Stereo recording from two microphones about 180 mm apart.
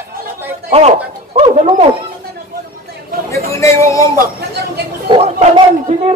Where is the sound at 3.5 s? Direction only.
15° left (ahead or behind).